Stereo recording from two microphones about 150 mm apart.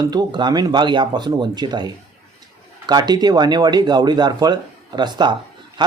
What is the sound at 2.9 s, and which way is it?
Speech, 30° right (ahead or behind).